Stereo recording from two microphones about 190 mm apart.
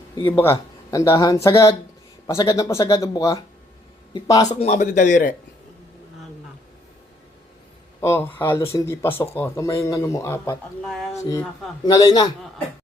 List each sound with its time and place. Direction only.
0.2 s a man's voice: 15° left (ahead or behind)
4.4 s speech: 35° left (ahead or behind)
8.0 s a man's voice: 10° left (ahead or behind)